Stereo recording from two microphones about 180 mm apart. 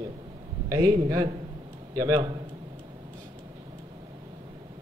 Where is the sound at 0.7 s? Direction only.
20° right (ahead or behind).